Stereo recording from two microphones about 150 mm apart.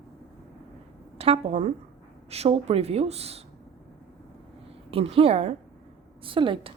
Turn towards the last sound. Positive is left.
turn(degrees=-35)  # may be behind; listen again after turning